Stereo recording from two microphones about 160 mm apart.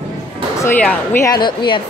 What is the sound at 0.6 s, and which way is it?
Speech, 10° left (ahead or behind).